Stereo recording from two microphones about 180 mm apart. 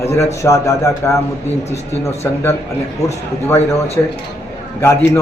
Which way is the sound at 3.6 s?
35° left (ahead or behind).